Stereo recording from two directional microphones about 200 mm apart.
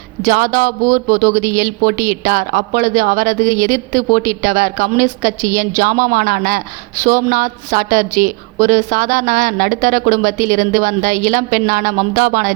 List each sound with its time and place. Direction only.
0.3 s speech: 45° right (ahead or behind)